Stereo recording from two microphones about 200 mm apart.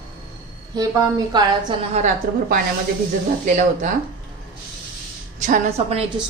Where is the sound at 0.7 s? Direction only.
20° right (ahead or behind).